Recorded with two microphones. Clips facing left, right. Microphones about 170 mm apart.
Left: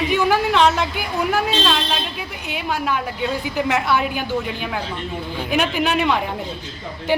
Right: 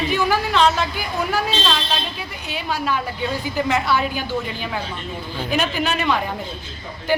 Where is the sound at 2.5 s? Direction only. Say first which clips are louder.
Left 1 dB; 15° left (ahead or behind).